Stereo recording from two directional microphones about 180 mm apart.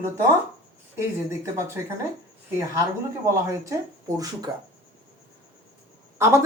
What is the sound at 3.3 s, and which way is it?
Speech, 15° right (ahead or behind).